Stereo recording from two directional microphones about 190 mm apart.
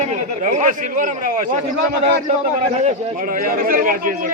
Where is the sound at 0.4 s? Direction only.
45° right (ahead or behind).